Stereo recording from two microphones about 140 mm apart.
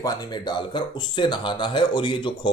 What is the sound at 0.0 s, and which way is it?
Speech, 25° left (ahead or behind).